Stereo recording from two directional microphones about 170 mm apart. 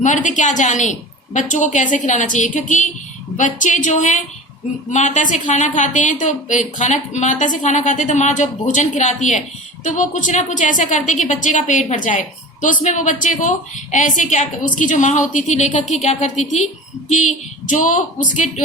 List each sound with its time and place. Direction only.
0.0 s a woman's voice: 45° left (ahead or behind)
17.7 s a woman's voice: 50° left (ahead or behind)